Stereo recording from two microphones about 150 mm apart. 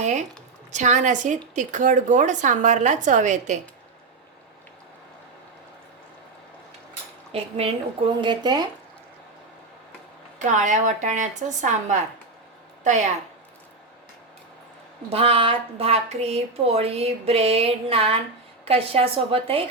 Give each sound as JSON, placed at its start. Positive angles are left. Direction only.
{"t": 0.0, "sound": "a sound", "side_deg": -50}
{"t": 0.7, "sound": "a woman's voice", "side_deg": -55}
{"t": 7.3, "sound": "speech", "side_deg": -40}
{"t": 8.2, "sound": "speech", "side_deg": -30}
{"t": 10.3, "sound": "a woman's voice", "side_deg": -55}
{"t": 15.1, "sound": "speech", "side_deg": -40}